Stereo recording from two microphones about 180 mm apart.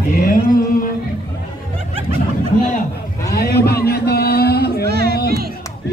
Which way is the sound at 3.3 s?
60° left (ahead or behind).